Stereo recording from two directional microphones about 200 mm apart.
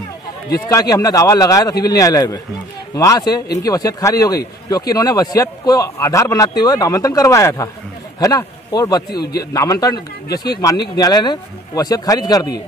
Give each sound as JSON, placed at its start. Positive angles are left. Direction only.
{"t": 0.7, "sound": "a man's voice", "side_deg": 15}
{"t": 9.1, "sound": "a man's voice", "side_deg": 50}
{"t": 9.4, "sound": "a man's voice", "side_deg": 15}